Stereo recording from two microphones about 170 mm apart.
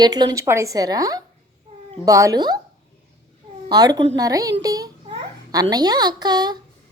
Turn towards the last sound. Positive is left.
turn(degrees=-25)  # may be behind; listen again after turning